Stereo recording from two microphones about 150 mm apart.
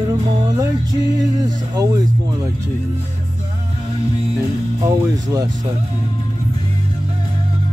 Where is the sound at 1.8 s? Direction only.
25° right (ahead or behind).